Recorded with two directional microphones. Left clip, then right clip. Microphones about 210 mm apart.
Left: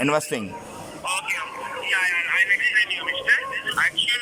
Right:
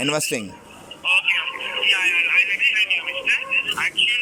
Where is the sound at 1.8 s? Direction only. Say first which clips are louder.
Right 4 dB; 5° right (ahead or behind).